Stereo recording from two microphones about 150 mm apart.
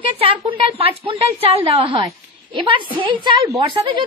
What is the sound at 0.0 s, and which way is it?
A woman's voice, 35° right (ahead or behind).